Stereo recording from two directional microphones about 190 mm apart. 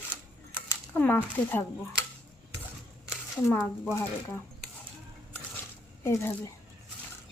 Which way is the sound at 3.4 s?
10° left (ahead or behind).